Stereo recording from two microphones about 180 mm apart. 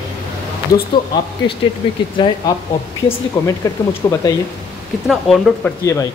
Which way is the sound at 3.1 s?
20° left (ahead or behind).